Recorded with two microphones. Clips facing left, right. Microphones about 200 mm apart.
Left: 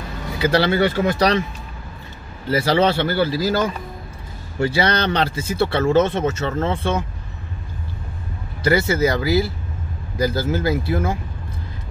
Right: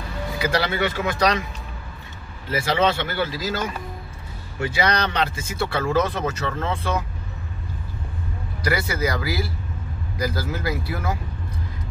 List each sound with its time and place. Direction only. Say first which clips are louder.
0.4 s speech: left 6 dB; 30° left (ahead or behind)
2.5 s speech: left 4 dB; 35° left (ahead or behind)
8.6 s speech: left 6 dB; 25° left (ahead or behind)